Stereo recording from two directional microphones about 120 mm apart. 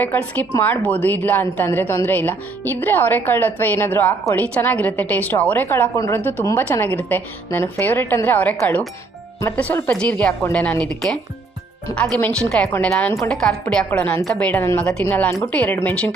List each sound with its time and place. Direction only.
0.0 s a woman's voice: 15° left (ahead or behind)
6.7 s speech: 15° left (ahead or behind)
9.6 s speech: 15° left (ahead or behind)
14.6 s a woman's voice: 20° left (ahead or behind)